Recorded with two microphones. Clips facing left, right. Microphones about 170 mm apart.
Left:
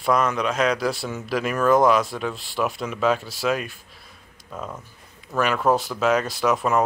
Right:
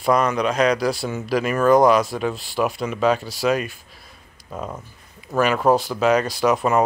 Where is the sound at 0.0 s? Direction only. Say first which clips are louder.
Right 3 dB; centre (ahead or behind).